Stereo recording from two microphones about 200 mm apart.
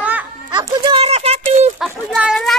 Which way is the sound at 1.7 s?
Centre (ahead or behind).